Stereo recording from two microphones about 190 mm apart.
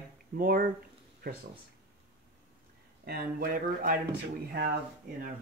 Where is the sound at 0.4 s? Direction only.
50° right (ahead or behind).